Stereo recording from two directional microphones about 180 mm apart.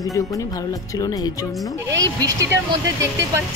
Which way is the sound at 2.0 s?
15° right (ahead or behind).